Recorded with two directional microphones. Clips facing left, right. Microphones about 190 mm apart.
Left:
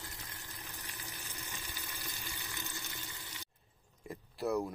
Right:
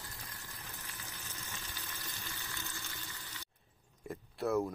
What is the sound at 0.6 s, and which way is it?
Water, 15° left (ahead or behind).